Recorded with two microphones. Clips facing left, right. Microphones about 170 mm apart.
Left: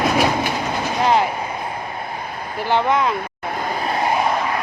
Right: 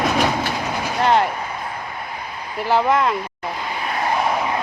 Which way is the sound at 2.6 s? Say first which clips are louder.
Right 1 dB; centre (ahead or behind).